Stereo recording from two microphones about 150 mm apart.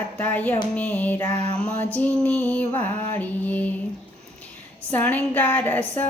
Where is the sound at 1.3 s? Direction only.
45° right (ahead or behind).